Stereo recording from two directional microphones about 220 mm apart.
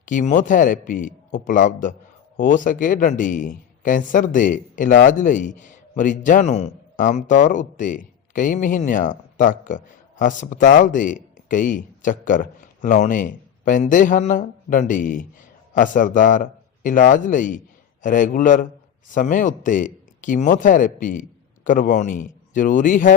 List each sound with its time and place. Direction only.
0.0 s a man's voice: 35° left (ahead or behind)